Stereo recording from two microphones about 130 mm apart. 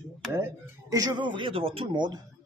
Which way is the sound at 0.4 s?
25° right (ahead or behind).